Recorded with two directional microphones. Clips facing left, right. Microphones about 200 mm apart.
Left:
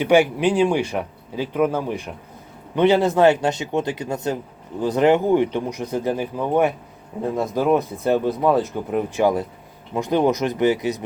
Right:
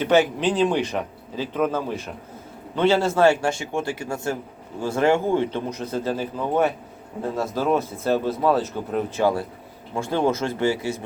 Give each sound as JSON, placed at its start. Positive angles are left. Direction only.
{"t": 0.0, "sound": "a man's voice", "side_deg": 15}